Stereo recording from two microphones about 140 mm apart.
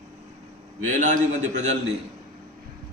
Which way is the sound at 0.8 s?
65° right (ahead or behind).